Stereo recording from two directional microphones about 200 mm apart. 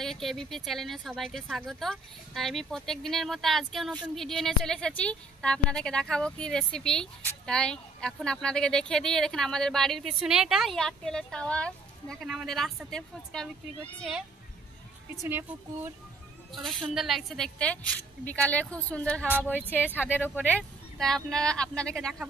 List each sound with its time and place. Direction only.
0.0 s speech: centre (ahead or behind)
15.2 s speech: 10° right (ahead or behind)
16.5 s speech: centre (ahead or behind)